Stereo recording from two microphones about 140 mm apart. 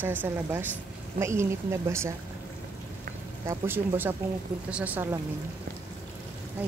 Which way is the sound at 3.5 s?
15° right (ahead or behind).